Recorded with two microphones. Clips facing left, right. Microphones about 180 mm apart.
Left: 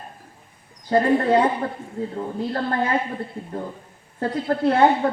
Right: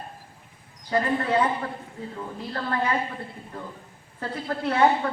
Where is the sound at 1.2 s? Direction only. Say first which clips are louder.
Left 5 dB; 35° left (ahead or behind).